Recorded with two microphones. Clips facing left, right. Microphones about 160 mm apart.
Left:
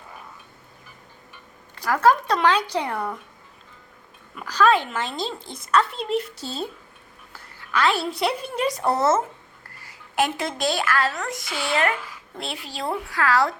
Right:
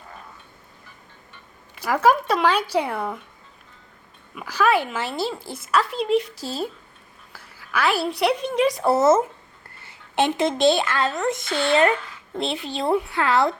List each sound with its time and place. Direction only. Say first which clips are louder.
1.7 s speech: even; 10° right (ahead or behind)
4.4 s a woman's voice: left 1 dB; 10° right (ahead or behind)
9.8 s speech: right 2 dB; 25° right (ahead or behind)
11.4 s a woman's voice: right 6 dB; 5° left (ahead or behind)
12.4 s a woman's voice: right 6 dB; 25° right (ahead or behind)